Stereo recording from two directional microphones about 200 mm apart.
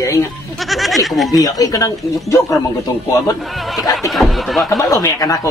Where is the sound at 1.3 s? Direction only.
20° left (ahead or behind).